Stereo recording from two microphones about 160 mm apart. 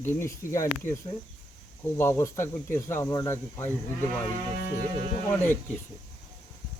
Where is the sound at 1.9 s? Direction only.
15° left (ahead or behind).